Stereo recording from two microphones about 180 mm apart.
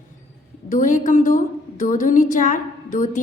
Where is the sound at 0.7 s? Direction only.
45° left (ahead or behind).